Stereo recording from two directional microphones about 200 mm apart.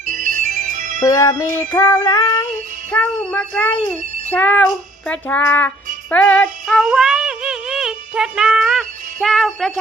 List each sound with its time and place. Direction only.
0.0 s ringtone: 40° right (ahead or behind)
1.0 s music: 15° left (ahead or behind)
6.1 s synthetic singing: 5° left (ahead or behind)